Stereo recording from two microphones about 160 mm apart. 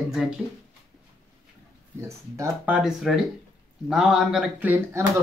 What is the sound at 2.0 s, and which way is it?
Speech, 20° right (ahead or behind).